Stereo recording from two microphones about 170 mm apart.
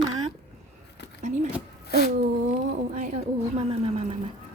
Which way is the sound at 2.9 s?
45° right (ahead or behind).